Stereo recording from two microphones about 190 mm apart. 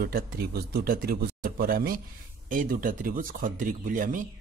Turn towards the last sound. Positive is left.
turn(degrees=-45)  # may be behind; listen again after turning